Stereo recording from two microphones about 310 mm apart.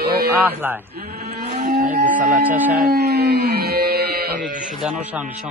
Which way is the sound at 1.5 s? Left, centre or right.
Right.